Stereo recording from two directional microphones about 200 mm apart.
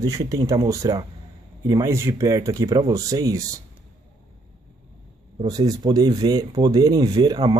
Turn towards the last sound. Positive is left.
turn(degrees=-20)  # may be behind; listen again after turning